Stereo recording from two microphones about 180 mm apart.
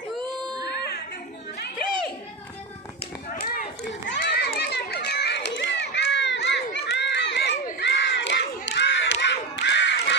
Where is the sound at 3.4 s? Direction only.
55° left (ahead or behind).